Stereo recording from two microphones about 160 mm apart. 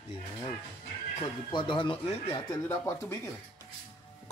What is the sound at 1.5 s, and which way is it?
Speech, 30° left (ahead or behind).